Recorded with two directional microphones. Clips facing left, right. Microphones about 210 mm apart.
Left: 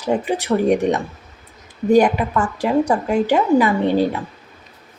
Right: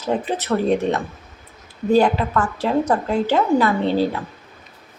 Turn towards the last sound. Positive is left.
turn(degrees=15)  # may be behind; listen again after turning